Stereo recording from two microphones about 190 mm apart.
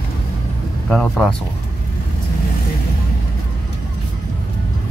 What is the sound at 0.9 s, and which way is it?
Speech, centre (ahead or behind).